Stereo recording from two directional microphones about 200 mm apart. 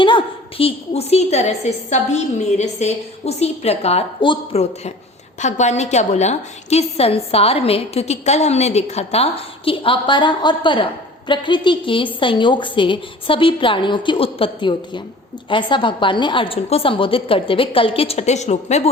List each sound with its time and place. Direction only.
0.0 s a woman's voice: 25° left (ahead or behind)